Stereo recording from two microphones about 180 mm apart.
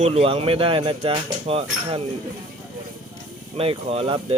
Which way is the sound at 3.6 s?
30° right (ahead or behind).